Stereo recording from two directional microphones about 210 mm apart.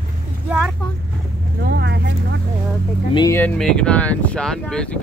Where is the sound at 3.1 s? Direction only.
15° left (ahead or behind).